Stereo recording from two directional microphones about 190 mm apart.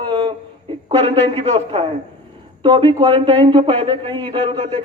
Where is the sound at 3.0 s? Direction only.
30° right (ahead or behind).